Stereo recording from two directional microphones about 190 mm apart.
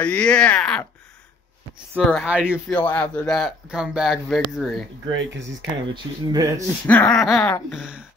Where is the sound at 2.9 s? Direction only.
5° left (ahead or behind).